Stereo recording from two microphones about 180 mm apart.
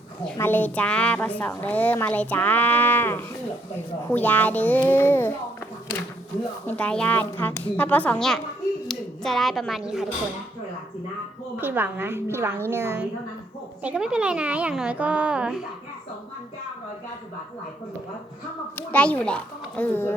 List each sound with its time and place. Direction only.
0.3 s a woman's voice: 10° left (ahead or behind)
6.7 s a woman's voice: 5° left (ahead or behind)
11.5 s a child's voice: 10° right (ahead or behind)
18.8 s a woman's voice: 10° left (ahead or behind)